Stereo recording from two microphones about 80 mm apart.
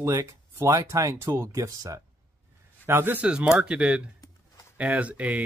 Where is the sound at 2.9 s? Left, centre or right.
Right.